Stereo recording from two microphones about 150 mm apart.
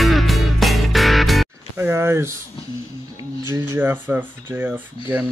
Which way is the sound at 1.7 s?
15° right (ahead or behind).